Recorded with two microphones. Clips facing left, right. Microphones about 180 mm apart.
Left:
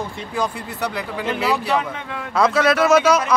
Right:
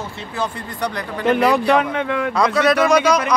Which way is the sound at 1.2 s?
60° right (ahead or behind).